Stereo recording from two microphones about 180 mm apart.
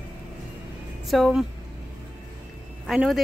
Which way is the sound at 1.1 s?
Centre (ahead or behind).